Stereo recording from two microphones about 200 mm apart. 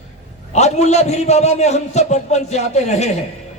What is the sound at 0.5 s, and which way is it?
A man's voice, 35° left (ahead or behind).